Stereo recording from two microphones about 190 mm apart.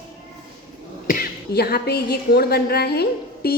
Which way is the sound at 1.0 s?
50° left (ahead or behind).